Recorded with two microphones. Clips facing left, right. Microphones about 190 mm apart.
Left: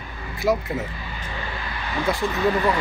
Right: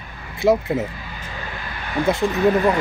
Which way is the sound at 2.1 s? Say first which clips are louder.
Right 4 dB; 25° right (ahead or behind).